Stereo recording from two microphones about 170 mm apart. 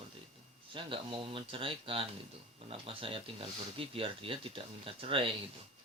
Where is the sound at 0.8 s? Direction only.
30° right (ahead or behind).